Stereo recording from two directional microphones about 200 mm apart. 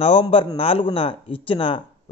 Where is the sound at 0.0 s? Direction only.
30° left (ahead or behind).